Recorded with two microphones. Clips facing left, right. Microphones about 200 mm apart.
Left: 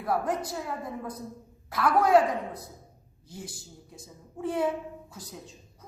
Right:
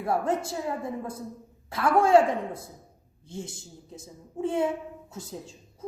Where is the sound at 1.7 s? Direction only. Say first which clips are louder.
Right 2 dB; 25° right (ahead or behind).